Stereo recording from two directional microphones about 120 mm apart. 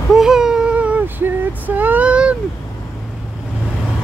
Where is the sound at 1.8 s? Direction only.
15° right (ahead or behind).